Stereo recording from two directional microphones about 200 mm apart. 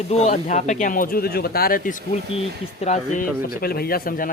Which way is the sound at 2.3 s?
30° left (ahead or behind).